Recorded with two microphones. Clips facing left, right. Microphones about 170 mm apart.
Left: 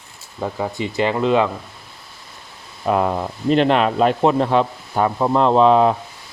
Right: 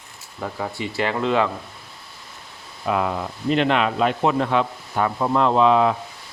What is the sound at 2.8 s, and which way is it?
Speech, 40° left (ahead or behind).